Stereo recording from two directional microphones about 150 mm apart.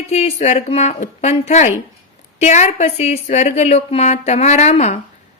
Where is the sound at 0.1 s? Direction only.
45° left (ahead or behind).